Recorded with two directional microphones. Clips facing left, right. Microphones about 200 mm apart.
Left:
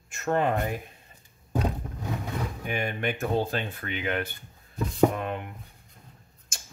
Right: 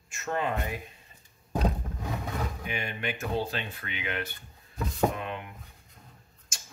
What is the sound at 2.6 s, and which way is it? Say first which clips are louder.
Speech: left 5 dB; 50° left (ahead or behind).